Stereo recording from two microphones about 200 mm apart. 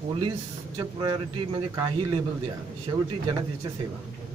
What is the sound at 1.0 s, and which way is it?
Speech, 20° right (ahead or behind).